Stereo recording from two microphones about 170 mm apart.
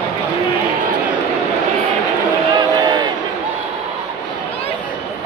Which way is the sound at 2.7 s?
25° right (ahead or behind).